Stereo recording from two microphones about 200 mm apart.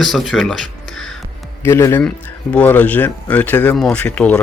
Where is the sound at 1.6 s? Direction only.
15° left (ahead or behind).